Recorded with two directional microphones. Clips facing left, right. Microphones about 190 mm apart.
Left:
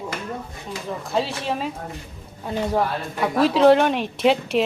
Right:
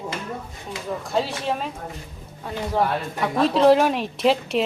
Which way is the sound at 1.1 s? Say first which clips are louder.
Even; centre (ahead or behind).